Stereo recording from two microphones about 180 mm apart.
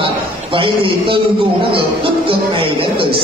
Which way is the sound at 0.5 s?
30° right (ahead or behind).